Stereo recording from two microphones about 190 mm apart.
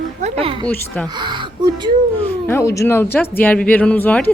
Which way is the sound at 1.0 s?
25° right (ahead or behind).